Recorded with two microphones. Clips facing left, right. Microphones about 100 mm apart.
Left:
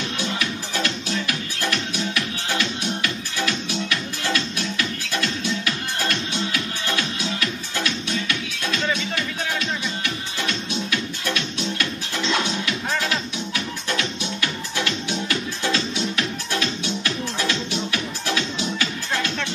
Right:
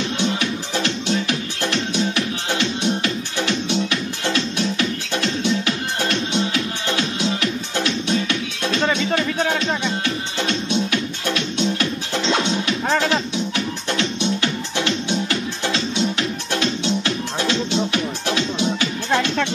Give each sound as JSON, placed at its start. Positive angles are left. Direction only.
{"t": 0.2, "sound": "music", "side_deg": -25}
{"t": 10.0, "sound": "music", "side_deg": -30}
{"t": 13.9, "sound": "music", "side_deg": -25}